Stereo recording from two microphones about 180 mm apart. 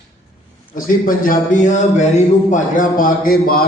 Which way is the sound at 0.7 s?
50° left (ahead or behind).